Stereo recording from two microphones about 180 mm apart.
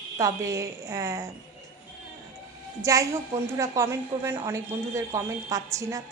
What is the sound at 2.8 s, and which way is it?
A woman's voice, 15° right (ahead or behind).